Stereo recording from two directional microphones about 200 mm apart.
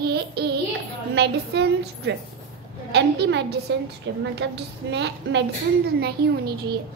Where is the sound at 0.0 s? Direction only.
55° right (ahead or behind).